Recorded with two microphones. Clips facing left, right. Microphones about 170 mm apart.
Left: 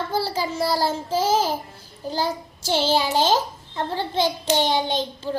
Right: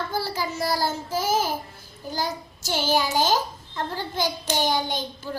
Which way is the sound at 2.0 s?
30° left (ahead or behind).